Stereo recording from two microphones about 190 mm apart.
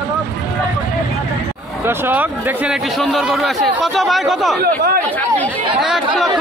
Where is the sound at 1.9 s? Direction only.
10° right (ahead or behind).